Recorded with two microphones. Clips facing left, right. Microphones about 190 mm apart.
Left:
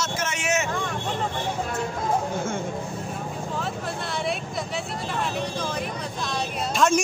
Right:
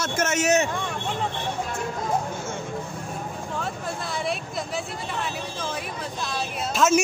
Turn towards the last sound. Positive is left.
turn(degrees=-5)  # may be behind; listen again after turning